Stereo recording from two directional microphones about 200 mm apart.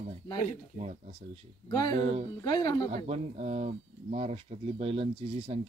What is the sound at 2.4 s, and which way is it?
Speech, 20° left (ahead or behind).